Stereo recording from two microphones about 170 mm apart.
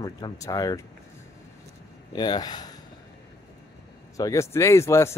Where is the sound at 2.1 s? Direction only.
25° left (ahead or behind).